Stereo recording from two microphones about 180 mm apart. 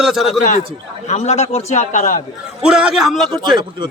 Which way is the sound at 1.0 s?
40° left (ahead or behind).